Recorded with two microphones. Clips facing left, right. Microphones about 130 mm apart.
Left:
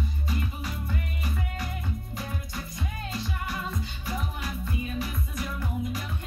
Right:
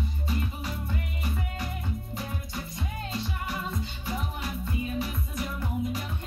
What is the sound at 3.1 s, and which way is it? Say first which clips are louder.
Music: even; 25° right (ahead or behind).